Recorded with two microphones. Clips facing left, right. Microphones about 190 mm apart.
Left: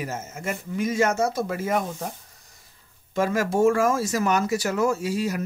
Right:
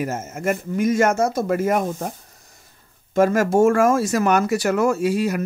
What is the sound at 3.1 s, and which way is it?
Speech, 50° right (ahead or behind).